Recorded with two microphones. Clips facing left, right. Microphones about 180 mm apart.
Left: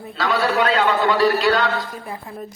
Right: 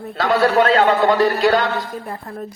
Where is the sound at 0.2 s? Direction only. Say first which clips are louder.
Right 4 dB; 55° right (ahead or behind).